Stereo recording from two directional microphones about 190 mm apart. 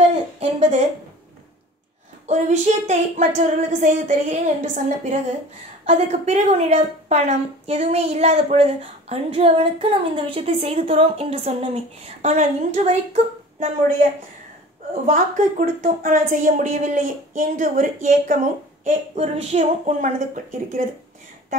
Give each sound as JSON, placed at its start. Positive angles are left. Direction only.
{"t": 0.4, "sound": "speech", "side_deg": -40}
{"t": 2.2, "sound": "a woman's voice", "side_deg": -40}
{"t": 15.0, "sound": "a woman's voice", "side_deg": -40}